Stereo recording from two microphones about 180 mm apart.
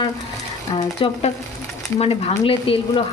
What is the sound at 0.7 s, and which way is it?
Speech, 30° left (ahead or behind).